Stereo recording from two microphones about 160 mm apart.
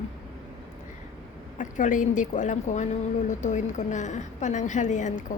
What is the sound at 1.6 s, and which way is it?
A woman's voice, 50° left (ahead or behind).